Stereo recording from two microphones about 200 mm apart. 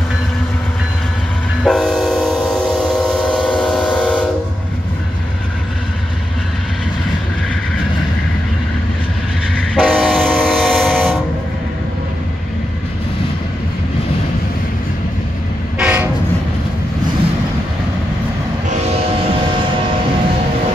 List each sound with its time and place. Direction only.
1.6 s train: 5° left (ahead or behind)
9.6 s train: 5° left (ahead or behind)
15.8 s train: 5° right (ahead or behind)
18.7 s music: 35° right (ahead or behind)